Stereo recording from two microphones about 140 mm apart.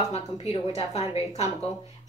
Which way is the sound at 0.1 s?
45° left (ahead or behind).